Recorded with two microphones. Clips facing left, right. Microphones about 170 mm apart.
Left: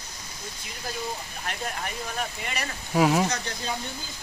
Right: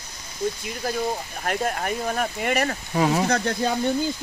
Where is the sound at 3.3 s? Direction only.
60° right (ahead or behind).